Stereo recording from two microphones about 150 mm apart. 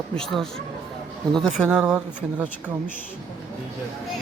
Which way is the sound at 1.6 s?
5° right (ahead or behind).